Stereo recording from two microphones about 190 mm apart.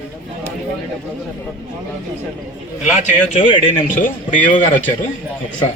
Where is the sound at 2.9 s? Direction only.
40° left (ahead or behind).